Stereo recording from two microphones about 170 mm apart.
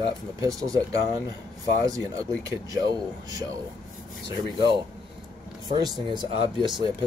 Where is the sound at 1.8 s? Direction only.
20° right (ahead or behind).